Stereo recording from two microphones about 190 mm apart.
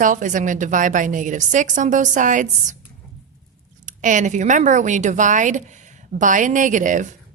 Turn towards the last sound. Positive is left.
turn(degrees=-40)  # may be behind; listen again after turning